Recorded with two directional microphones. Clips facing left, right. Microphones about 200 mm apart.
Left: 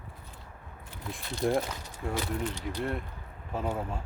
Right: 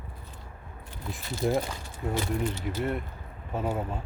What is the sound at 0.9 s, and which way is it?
Speech, centre (ahead or behind).